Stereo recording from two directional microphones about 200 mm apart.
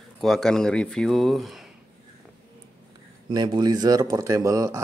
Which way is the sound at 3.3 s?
20° right (ahead or behind).